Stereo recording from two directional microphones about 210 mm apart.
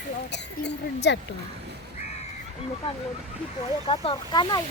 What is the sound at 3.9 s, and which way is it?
Speech, 25° left (ahead or behind).